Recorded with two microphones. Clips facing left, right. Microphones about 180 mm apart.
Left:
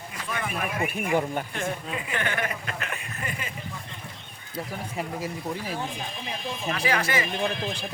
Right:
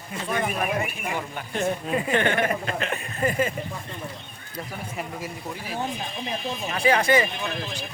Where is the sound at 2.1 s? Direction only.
25° right (ahead or behind).